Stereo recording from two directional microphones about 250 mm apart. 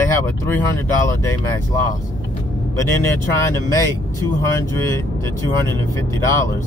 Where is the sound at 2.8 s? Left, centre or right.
Centre.